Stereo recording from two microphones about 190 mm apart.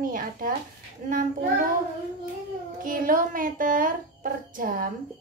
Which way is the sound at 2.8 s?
45° right (ahead or behind).